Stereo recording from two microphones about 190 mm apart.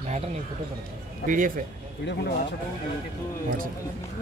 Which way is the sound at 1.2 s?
45° right (ahead or behind).